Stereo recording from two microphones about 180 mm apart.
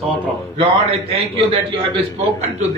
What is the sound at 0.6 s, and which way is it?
Speech, 30° right (ahead or behind).